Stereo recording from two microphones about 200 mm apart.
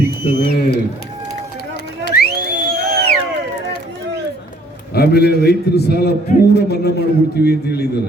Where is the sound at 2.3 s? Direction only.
50° right (ahead or behind).